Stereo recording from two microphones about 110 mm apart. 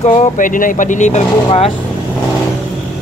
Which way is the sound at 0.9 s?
90° left.